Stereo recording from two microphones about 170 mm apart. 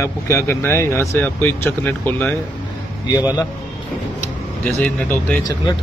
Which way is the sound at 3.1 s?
25° left (ahead or behind).